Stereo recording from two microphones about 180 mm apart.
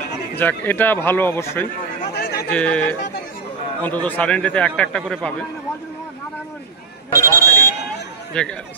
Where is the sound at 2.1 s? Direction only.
65° left (ahead or behind).